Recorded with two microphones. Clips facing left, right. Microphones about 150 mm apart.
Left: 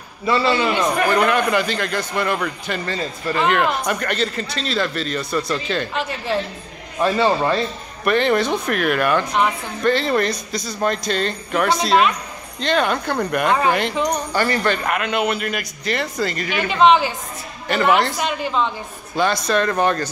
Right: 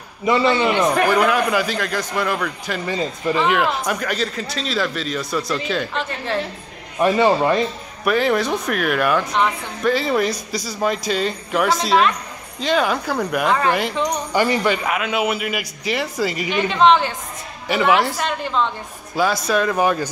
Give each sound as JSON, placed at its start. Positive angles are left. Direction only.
{"t": 0.2, "sound": "a man's voice", "side_deg": -20}
{"t": 1.1, "sound": "a woman's voice", "side_deg": -5}
{"t": 2.9, "sound": "a man's voice", "side_deg": -15}
{"t": 3.3, "sound": "a woman's voice", "side_deg": 0}
{"t": 7.0, "sound": "a man's voice", "side_deg": -15}
{"t": 8.0, "sound": "a woman's voice", "side_deg": -5}
{"t": 14.3, "sound": "a man's voice", "side_deg": -15}
{"t": 16.5, "sound": "a woman's voice", "side_deg": 5}
{"t": 17.6, "sound": "a woman's voice", "side_deg": -5}